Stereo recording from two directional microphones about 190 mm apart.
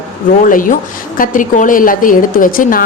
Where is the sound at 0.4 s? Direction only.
45° left (ahead or behind).